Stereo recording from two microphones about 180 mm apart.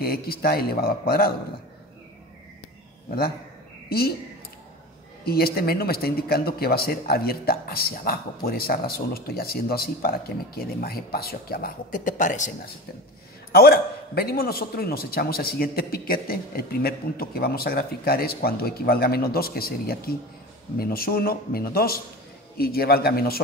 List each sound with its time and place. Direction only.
0.0 s speech: 60° left (ahead or behind)
5.2 s speech: 60° left (ahead or behind); by 12.5 s 45° left (ahead or behind)
13.5 s speech: 60° left (ahead or behind)